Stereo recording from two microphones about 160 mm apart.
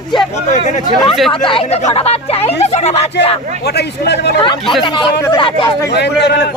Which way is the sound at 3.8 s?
90° left.